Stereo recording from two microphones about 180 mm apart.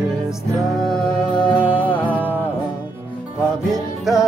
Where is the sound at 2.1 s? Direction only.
10° right (ahead or behind).